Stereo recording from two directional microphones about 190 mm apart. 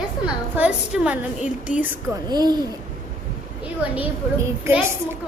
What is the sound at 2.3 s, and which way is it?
Speech, 20° right (ahead or behind).